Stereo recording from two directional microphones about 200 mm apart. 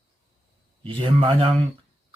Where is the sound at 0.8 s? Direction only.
25° right (ahead or behind).